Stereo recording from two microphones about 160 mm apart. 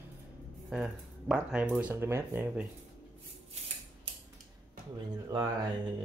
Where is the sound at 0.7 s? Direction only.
5° right (ahead or behind).